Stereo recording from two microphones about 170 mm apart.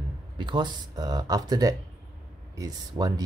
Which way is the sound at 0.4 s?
25° right (ahead or behind).